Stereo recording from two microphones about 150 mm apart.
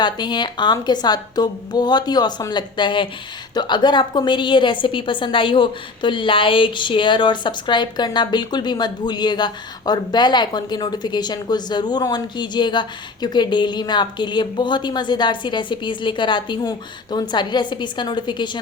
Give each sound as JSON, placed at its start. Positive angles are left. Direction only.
{"t": 0.0, "sound": "a woman's voice", "side_deg": 30}